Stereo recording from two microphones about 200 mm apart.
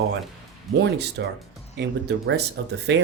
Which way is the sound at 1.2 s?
65° right (ahead or behind).